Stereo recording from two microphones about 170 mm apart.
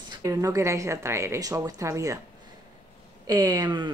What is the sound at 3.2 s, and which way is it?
Speech, 20° right (ahead or behind).